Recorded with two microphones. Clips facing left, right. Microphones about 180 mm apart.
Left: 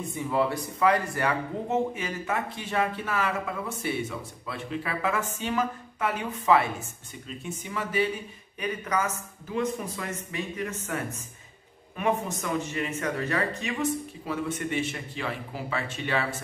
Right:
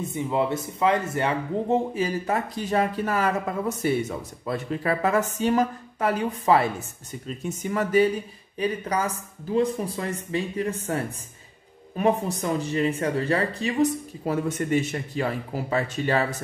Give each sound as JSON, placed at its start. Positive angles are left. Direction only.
{"t": 0.1, "sound": "speech", "side_deg": -20}
{"t": 8.5, "sound": "speech", "side_deg": -30}